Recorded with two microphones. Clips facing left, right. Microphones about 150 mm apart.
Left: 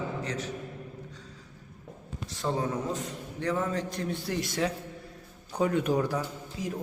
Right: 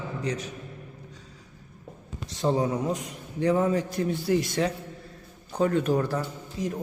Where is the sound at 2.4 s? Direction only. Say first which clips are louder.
Right 5 dB; 15° right (ahead or behind); by 4.7 s centre (ahead or behind).